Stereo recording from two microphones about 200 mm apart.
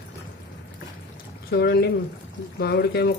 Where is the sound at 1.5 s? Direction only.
55° left (ahead or behind).